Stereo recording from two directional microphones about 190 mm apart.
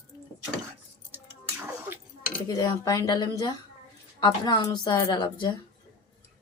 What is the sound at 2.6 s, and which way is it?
A woman's voice, 20° left (ahead or behind).